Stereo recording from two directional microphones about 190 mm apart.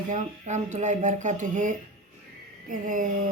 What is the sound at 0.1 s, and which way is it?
Speech, 40° right (ahead or behind).